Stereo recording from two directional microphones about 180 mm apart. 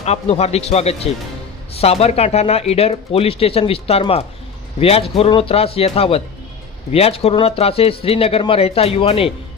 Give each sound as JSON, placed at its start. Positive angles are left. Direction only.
{"t": 0.0, "sound": "speech", "side_deg": 35}